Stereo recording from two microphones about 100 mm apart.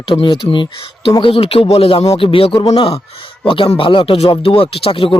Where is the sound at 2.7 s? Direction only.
75° left (ahead or behind).